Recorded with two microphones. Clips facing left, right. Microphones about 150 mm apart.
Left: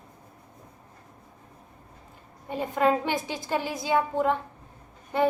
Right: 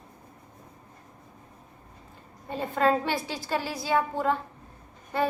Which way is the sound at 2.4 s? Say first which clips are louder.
Left 1 dB; 15° left (ahead or behind).